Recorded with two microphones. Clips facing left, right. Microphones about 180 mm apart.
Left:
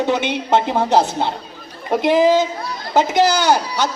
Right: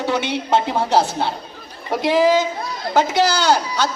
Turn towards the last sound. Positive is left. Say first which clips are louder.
# left 1 dB
turn(degrees=15)  # may be behind; listen again after turning